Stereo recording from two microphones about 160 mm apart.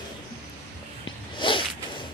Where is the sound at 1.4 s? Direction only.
30° left (ahead or behind).